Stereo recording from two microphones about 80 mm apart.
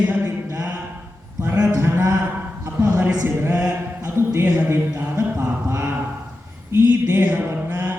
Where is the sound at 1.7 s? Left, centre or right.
Right.